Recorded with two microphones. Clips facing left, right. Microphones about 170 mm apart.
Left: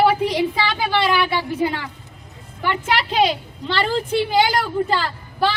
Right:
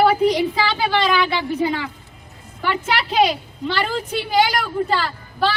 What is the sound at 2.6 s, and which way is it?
Speech, 15° left (ahead or behind).